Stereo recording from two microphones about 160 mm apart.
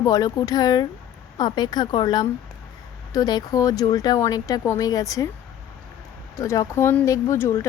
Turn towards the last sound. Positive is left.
turn(degrees=15)  # may be behind; listen again after turning